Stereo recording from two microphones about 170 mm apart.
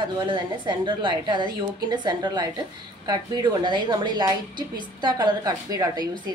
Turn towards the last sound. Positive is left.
turn(degrees=-20)  # may be behind; listen again after turning